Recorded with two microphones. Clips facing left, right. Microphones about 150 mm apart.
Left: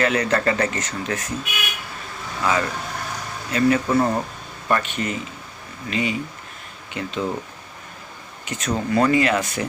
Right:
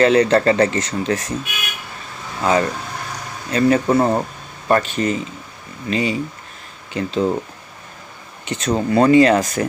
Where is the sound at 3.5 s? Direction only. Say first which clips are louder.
Right 3 dB; 35° right (ahead or behind).